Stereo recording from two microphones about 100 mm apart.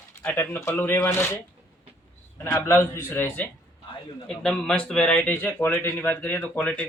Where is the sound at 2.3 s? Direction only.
25° left (ahead or behind).